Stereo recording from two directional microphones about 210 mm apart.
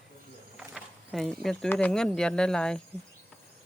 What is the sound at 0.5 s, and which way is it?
Speech, centre (ahead or behind).